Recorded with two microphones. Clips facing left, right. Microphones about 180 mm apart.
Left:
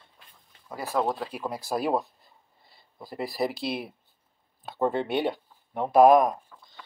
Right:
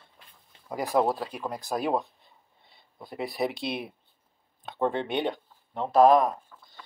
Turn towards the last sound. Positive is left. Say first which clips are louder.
# left 1 dB
turn(degrees=15)  # may be behind; listen again after turning